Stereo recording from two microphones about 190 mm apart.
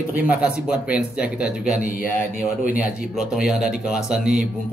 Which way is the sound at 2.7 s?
5° right (ahead or behind).